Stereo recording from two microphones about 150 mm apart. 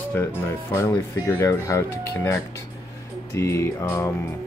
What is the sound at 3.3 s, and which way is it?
Speech, 20° left (ahead or behind).